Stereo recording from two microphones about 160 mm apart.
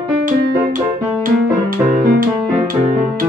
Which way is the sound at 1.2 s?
60° right (ahead or behind).